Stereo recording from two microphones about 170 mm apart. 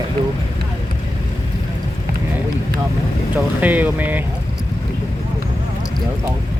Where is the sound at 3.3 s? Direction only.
10° right (ahead or behind).